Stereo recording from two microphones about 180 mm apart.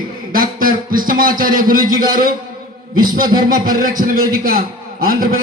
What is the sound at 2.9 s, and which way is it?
A man's voice, 50° right (ahead or behind).